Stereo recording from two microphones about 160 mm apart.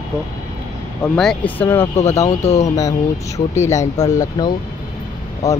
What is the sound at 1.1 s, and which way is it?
Speech, 5° left (ahead or behind).